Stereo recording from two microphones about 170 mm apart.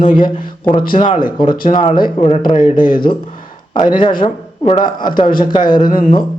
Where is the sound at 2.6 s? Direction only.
50° left (ahead or behind).